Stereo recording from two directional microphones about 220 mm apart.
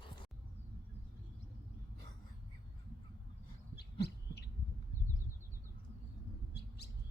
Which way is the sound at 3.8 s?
50° left (ahead or behind).